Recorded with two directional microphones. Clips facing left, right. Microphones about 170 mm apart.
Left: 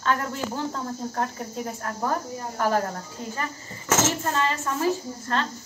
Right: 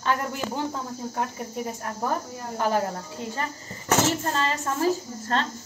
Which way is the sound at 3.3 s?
35° right (ahead or behind).